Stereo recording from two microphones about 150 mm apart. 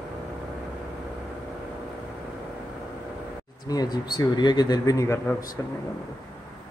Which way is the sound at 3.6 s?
25° left (ahead or behind).